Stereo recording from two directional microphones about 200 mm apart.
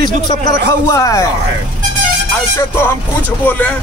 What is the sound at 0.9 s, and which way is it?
Speech, 15° left (ahead or behind).